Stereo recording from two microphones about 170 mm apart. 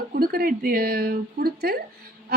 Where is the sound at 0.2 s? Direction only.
60° right (ahead or behind).